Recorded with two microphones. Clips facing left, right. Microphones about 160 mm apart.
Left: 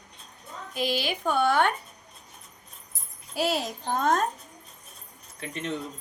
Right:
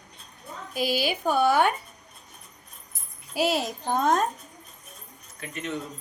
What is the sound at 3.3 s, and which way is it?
Speech, 10° right (ahead or behind).